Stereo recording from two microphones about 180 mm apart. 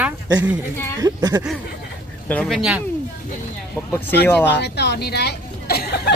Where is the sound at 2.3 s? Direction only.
5° left (ahead or behind).